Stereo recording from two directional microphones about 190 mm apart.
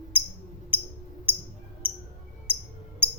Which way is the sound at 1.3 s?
10° right (ahead or behind).